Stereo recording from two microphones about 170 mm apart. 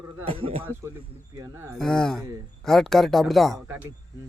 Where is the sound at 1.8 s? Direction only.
5° left (ahead or behind).